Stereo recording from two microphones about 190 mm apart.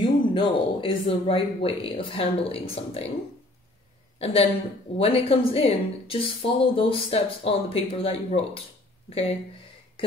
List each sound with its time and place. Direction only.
0.0 s speech: 25° left (ahead or behind)
4.2 s speech: 30° left (ahead or behind)